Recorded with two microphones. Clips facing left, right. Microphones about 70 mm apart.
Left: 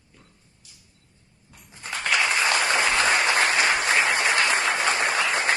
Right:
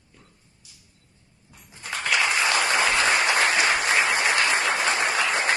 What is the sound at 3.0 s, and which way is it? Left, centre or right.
Applause, left.